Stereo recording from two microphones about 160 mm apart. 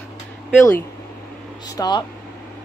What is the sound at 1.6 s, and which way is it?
Speech, 25° left (ahead or behind).